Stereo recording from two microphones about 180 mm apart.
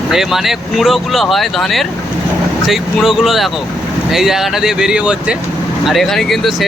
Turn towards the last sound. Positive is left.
turn(degrees=0)  # may be behind; listen again after turning